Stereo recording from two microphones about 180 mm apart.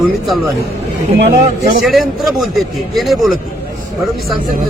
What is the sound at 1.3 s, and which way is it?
Speech, 40° right (ahead or behind).